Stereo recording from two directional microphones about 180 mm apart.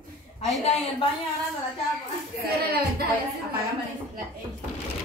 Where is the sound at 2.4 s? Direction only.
60° right (ahead or behind).